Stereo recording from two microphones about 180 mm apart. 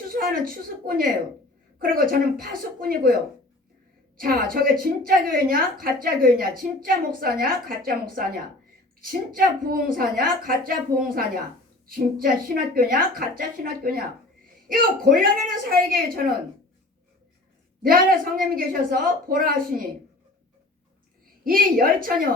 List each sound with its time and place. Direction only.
0.1 s a woman's voice: 55° right (ahead or behind)
4.2 s a woman's voice: 55° right (ahead or behind)
17.8 s a woman's voice: 50° right (ahead or behind)
21.4 s a woman's voice: 55° right (ahead or behind)